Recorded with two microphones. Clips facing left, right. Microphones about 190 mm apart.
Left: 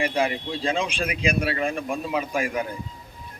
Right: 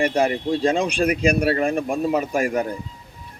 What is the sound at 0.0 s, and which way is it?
A man's voice, 40° right (ahead or behind).